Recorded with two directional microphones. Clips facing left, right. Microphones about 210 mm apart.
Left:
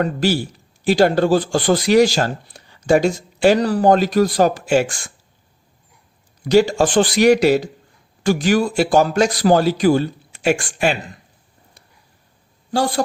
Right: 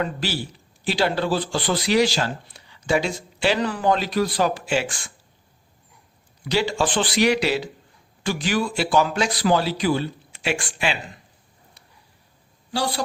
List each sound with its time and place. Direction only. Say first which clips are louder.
0.0 s speech: left 8 dB; 45° left (ahead or behind)
6.4 s speech: left 8 dB; 45° left (ahead or behind)
12.7 s speech: left 6 dB; 50° left (ahead or behind)